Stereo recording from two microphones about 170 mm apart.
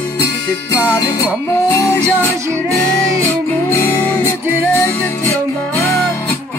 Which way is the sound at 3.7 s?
10° left (ahead or behind).